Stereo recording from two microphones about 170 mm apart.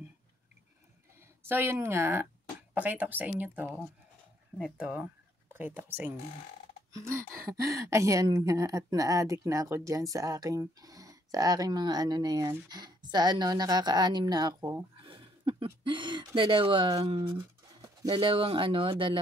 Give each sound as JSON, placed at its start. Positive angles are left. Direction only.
{"t": 1.5, "sound": "speech", "side_deg": -15}
{"t": 15.0, "sound": "a sound", "side_deg": -30}
{"t": 16.3, "sound": "speech", "side_deg": -30}